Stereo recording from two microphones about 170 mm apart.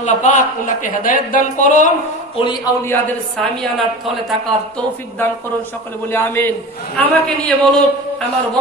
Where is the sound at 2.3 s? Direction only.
25° left (ahead or behind).